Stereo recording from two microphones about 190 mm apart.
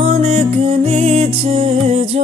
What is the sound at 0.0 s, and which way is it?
Music, 35° right (ahead or behind).